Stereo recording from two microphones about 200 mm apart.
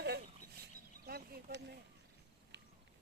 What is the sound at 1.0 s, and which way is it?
Speech, 50° right (ahead or behind).